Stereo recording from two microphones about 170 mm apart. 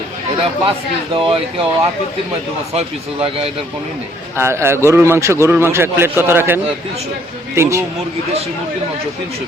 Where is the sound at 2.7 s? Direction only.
35° right (ahead or behind).